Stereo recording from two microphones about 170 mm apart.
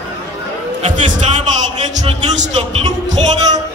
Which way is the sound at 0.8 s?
50° right (ahead or behind).